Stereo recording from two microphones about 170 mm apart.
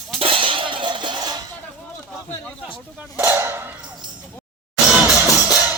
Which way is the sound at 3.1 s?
15° right (ahead or behind).